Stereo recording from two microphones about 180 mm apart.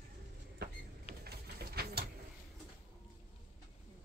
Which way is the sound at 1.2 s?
60° right (ahead or behind).